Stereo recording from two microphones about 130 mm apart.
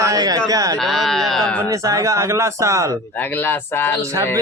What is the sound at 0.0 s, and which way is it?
Speech, 25° right (ahead or behind).